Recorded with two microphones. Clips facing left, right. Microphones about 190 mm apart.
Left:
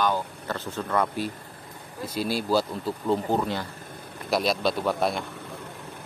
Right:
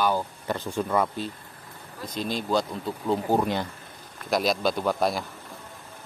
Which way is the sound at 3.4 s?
15° right (ahead or behind).